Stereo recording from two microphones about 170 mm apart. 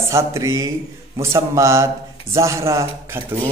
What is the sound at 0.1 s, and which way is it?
A man's voice, 20° right (ahead or behind).